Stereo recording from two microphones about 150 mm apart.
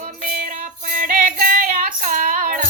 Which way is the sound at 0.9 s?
60° right (ahead or behind).